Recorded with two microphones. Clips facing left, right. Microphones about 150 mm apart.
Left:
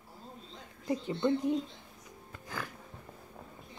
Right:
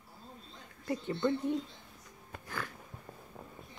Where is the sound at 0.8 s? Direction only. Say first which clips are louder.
Left 2 dB; 20° left (ahead or behind).